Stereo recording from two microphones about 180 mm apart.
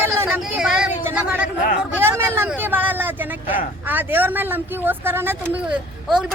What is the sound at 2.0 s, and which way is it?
Vehicle, 15° right (ahead or behind).